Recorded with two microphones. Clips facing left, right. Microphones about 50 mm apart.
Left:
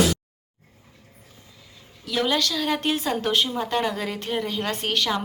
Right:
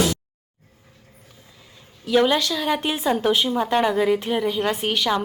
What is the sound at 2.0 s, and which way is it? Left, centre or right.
A woman's voice, right.